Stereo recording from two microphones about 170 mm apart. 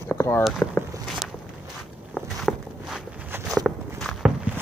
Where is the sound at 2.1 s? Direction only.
Centre (ahead or behind).